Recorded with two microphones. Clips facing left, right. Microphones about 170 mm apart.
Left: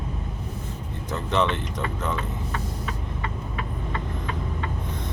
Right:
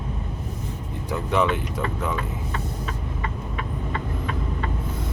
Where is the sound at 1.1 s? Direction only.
10° right (ahead or behind).